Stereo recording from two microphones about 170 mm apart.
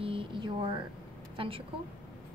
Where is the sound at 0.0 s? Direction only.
30° right (ahead or behind).